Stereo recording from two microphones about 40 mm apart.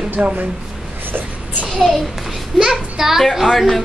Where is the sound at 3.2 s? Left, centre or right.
Centre.